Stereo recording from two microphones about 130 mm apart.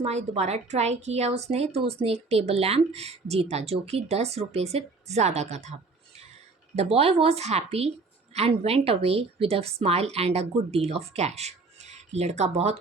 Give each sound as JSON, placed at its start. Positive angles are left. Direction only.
{"t": 0.0, "sound": "a woman's voice", "side_deg": -55}
{"t": 6.7, "sound": "a woman's voice", "side_deg": -50}